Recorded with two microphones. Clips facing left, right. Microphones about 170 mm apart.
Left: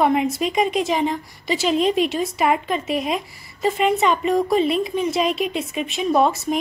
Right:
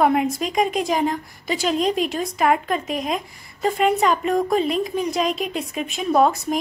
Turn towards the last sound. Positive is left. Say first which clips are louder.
# even
turn(degrees=0)  # may be behind; listen again after turning